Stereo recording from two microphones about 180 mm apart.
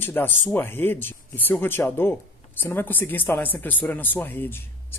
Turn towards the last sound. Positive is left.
turn(degrees=10)  # may be behind; listen again after turning